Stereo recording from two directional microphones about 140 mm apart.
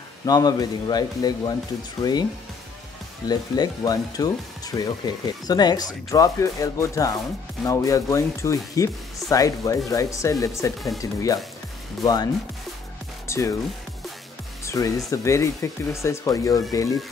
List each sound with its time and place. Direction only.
0.2 s speech: 25° left (ahead or behind)
3.3 s speech: 30° left (ahead or behind)
13.3 s speech: 20° left (ahead or behind)
14.6 s speech: 20° left (ahead or behind)